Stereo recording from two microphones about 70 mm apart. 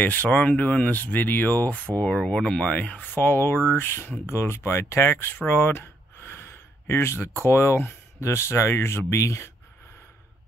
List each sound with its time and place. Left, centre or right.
0.0 s speech: left